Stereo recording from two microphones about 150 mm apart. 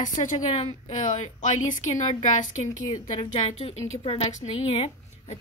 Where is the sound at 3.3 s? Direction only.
40° left (ahead or behind).